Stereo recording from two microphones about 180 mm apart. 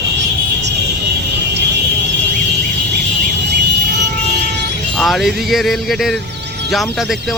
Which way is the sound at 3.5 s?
65° right (ahead or behind).